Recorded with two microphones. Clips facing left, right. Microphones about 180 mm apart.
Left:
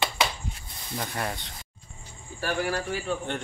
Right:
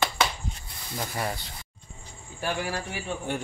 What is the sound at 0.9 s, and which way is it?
Speech, centre (ahead or behind).